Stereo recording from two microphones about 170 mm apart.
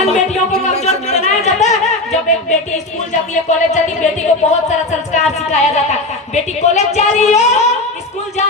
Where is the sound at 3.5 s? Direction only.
45° left (ahead or behind).